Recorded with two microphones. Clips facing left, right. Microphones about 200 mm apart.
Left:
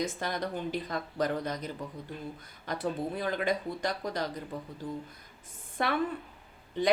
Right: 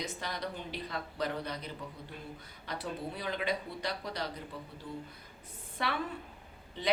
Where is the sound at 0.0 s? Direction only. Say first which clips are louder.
Left 6 dB; 50° left (ahead or behind).